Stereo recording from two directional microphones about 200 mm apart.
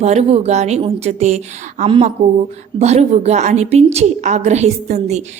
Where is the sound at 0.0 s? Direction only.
35° right (ahead or behind).